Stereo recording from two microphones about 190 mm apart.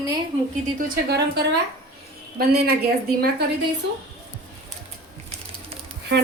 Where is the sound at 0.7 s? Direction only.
55° right (ahead or behind).